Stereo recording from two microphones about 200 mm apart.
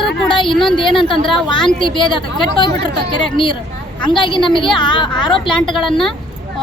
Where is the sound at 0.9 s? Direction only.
25° left (ahead or behind).